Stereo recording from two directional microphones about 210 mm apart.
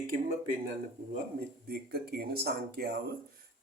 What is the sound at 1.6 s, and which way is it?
Speech, 50° right (ahead or behind).